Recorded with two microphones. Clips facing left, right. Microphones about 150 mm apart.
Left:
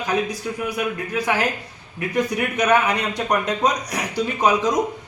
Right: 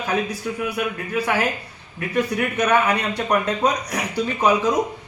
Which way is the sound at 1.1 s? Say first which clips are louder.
Right 1 dB; 10° left (ahead or behind).